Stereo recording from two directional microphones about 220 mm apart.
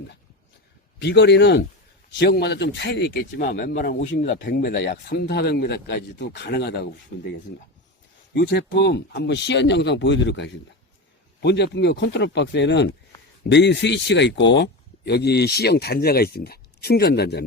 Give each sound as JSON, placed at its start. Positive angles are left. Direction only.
{"t": 0.9, "sound": "speech", "side_deg": 50}
{"t": 4.4, "sound": "speech", "side_deg": 50}